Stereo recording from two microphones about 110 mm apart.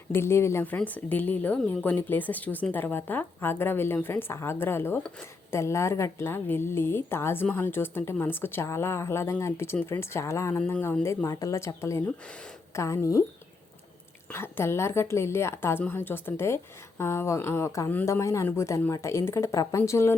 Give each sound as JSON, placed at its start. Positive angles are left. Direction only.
{"t": 0.1, "sound": "speech", "side_deg": 20}
{"t": 14.3, "sound": "speech", "side_deg": 25}